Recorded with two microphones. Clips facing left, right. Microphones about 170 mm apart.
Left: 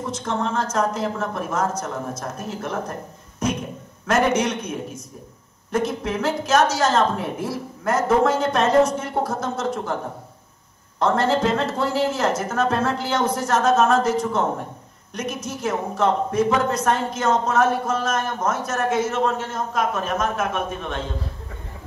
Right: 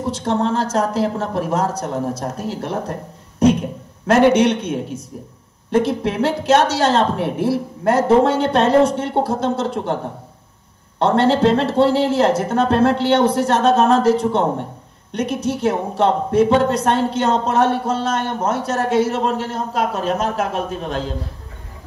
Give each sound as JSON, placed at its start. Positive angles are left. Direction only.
{"t": 0.0, "sound": "speech", "side_deg": -35}
{"t": 11.0, "sound": "speech", "side_deg": -30}